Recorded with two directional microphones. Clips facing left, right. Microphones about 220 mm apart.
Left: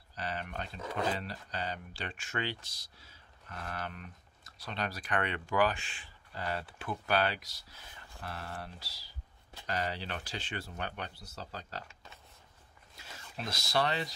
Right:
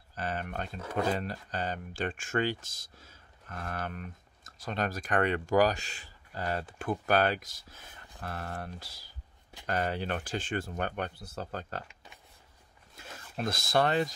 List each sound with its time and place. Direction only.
0.1 s speech: 50° right (ahead or behind)
0.7 s speech: 10° right (ahead or behind)
1.1 s speech: 45° right (ahead or behind)
11.9 s a sound: 15° right (ahead or behind)
12.9 s speech: 50° right (ahead or behind)